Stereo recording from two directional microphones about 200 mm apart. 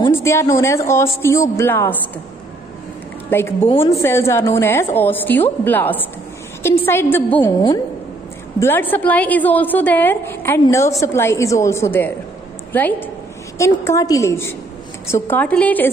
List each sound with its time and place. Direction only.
0.1 s a woman's voice: 15° left (ahead or behind)
3.3 s a woman's voice: 10° left (ahead or behind)
3.6 s a woman's voice: 30° left (ahead or behind)
4.0 s a woman's voice: 10° left (ahead or behind)
8.5 s a woman's voice: 10° left (ahead or behind)